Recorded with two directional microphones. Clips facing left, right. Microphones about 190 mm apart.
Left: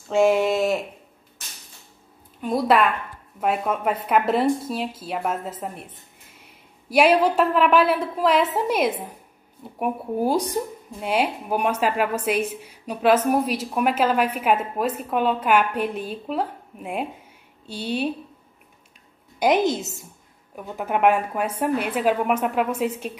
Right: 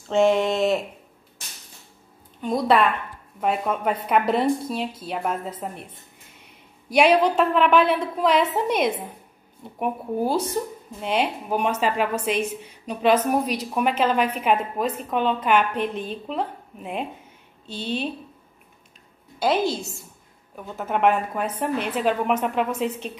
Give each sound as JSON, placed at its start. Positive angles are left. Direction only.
{"t": 0.1, "sound": "a woman's voice", "side_deg": 5}
{"t": 2.4, "sound": "a woman's voice", "side_deg": 5}
{"t": 6.9, "sound": "a woman's voice", "side_deg": 5}
{"t": 19.4, "sound": "a woman's voice", "side_deg": 20}